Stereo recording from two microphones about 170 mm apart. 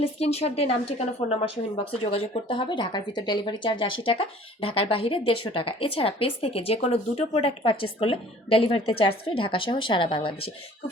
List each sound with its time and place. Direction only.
0.0 s speech: 35° left (ahead or behind)